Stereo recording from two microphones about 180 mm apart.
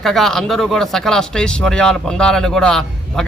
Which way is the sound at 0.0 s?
Centre (ahead or behind).